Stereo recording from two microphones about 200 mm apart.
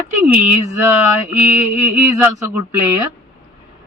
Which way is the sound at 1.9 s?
35° left (ahead or behind).